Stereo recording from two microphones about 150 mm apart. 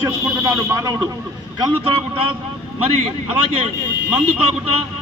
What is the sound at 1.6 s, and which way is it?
Speech, 35° right (ahead or behind).